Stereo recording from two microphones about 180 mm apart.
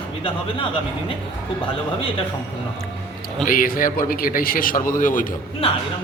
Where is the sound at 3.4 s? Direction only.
50° left (ahead or behind).